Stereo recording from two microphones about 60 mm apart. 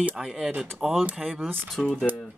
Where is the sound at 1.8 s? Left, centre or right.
Centre.